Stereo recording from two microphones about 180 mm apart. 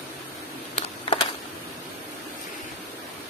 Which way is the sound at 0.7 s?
30° left (ahead or behind).